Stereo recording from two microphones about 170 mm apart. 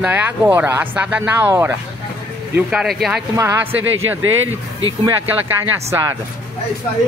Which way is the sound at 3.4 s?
15° right (ahead or behind).